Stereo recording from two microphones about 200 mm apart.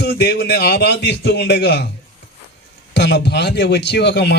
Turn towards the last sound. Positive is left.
turn(degrees=55)  # may be behind; listen again after turning